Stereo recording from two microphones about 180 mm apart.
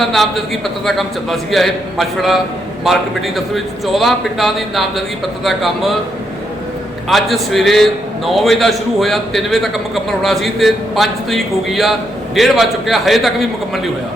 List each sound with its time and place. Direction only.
0.0 s a man's voice: centre (ahead or behind)
7.1 s a man's voice: centre (ahead or behind)